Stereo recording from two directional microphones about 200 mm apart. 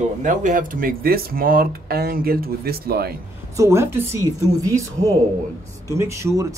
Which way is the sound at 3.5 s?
15° right (ahead or behind).